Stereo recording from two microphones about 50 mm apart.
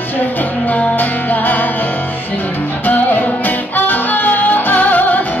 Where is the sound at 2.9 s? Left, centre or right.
Left.